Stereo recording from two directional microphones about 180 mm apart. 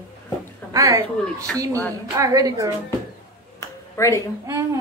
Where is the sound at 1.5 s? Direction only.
5° left (ahead or behind).